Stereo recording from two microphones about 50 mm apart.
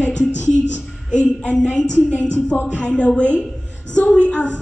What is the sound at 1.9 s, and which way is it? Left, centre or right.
Speech, left.